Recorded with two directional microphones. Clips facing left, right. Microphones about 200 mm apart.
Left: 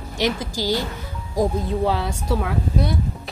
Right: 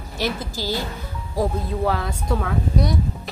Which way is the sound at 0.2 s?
15° left (ahead or behind).